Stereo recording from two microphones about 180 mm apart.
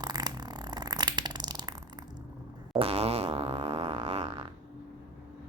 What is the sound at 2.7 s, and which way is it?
Fart, 30° right (ahead or behind).